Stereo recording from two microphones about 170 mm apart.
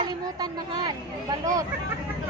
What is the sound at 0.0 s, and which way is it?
Speech, 25° right (ahead or behind).